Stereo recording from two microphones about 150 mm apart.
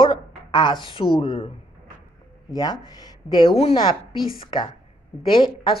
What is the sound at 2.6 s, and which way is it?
Speech, 25° left (ahead or behind).